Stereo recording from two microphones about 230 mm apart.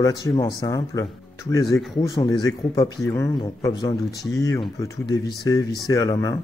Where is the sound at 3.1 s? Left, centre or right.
Centre.